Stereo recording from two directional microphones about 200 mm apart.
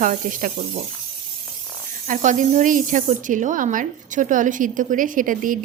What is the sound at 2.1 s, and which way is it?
Speech, 40° right (ahead or behind).